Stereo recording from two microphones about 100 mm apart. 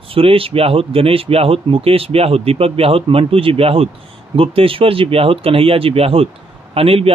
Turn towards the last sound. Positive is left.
turn(degrees=-75)  # may be behind; listen again after turning